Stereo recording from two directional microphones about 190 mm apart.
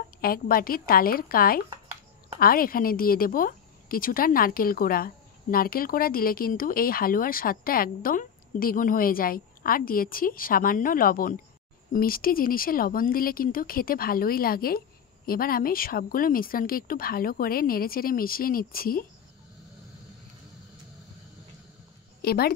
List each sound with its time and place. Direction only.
0.2 s a woman's voice: 50° left (ahead or behind)
22.2 s a woman's voice: 55° left (ahead or behind)